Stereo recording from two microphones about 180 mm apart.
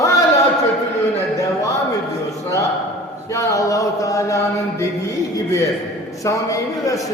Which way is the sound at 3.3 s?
15° left (ahead or behind).